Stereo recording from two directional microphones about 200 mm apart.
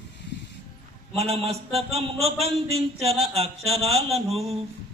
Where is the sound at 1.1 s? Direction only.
30° right (ahead or behind).